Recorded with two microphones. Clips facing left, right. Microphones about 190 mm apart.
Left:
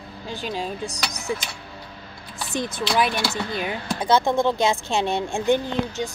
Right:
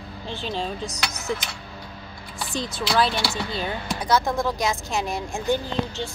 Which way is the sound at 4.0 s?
25° left (ahead or behind).